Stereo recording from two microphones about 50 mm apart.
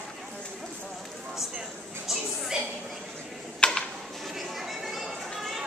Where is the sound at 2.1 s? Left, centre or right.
Centre.